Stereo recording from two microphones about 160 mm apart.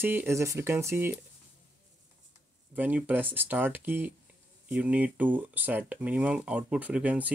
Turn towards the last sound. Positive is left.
turn(degrees=-10)  # may be behind; listen again after turning